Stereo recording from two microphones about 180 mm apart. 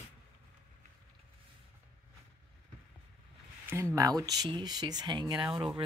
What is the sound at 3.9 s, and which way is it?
Speech, 20° right (ahead or behind).